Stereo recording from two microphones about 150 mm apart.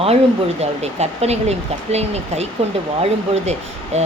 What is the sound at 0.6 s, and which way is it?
Speech, 45° right (ahead or behind).